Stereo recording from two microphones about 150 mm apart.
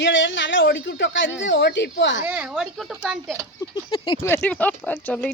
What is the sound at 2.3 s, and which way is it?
Speech, 10° right (ahead or behind).